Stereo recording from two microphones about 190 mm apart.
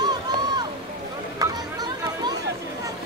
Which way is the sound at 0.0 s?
20° right (ahead or behind).